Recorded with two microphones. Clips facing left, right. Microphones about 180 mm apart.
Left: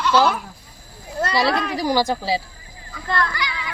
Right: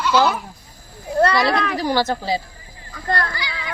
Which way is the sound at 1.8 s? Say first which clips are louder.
Even; 10° left (ahead or behind).